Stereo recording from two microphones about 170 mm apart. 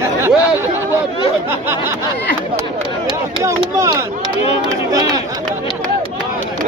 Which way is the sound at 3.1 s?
15° right (ahead or behind).